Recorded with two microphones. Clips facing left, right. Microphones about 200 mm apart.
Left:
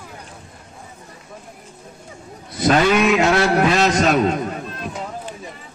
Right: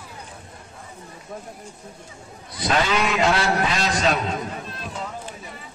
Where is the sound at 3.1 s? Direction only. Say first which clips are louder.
Left 5 dB; 50° left (ahead or behind).